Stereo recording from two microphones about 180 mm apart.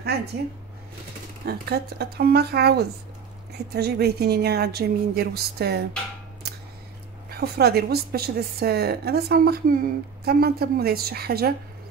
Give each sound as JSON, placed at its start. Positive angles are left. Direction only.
{"t": 0.0, "sound": "speech", "side_deg": -65}
{"t": 1.4, "sound": "a woman's voice", "side_deg": -60}
{"t": 7.2, "sound": "a woman's voice", "side_deg": -60}